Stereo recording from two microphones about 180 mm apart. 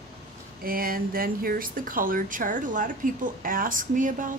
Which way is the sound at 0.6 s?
55° right (ahead or behind).